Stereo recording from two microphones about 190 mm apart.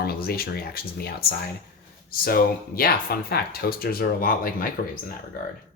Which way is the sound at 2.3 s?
50° left (ahead or behind).